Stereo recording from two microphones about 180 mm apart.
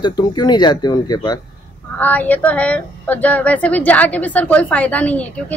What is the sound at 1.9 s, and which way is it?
A woman's voice, 10° left (ahead or behind).